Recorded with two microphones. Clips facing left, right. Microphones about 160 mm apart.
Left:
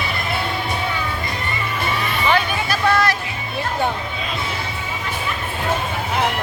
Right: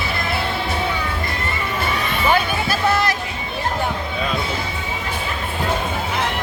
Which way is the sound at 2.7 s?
25° right (ahead or behind).